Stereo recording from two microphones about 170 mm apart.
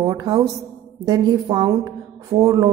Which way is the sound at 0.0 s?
20° right (ahead or behind).